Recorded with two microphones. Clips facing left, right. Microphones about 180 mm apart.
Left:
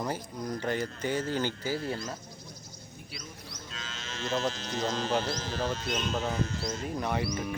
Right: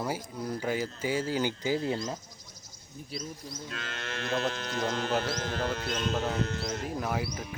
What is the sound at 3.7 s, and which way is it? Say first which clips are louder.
Speech: right 3 dB; 60° right (ahead or behind).